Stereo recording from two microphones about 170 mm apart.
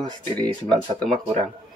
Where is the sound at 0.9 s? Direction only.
5° left (ahead or behind).